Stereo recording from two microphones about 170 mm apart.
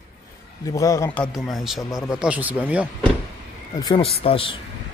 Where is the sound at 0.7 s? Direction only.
20° left (ahead or behind).